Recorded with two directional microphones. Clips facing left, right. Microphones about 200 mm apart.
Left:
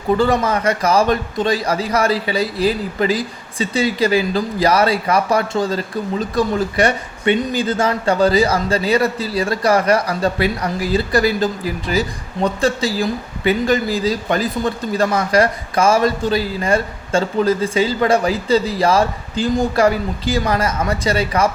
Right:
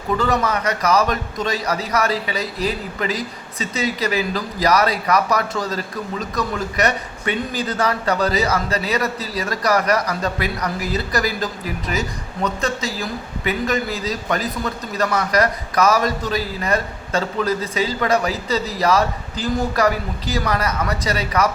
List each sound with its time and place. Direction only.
0.2 s a man's voice: 30° left (ahead or behind)